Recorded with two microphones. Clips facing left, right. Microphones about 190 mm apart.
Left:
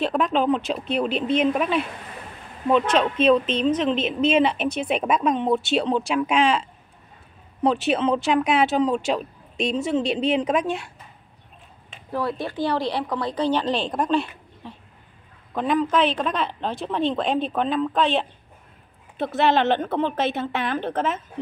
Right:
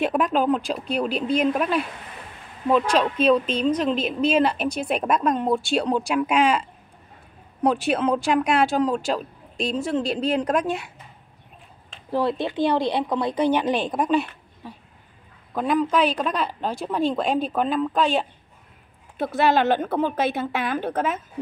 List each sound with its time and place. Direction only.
0.0 s speech: 5° right (ahead or behind)
3.0 s speech: 5° right (ahead or behind)
7.9 s speech: centre (ahead or behind)
12.1 s a woman's voice: 25° right (ahead or behind); by 21.2 s 5° right (ahead or behind)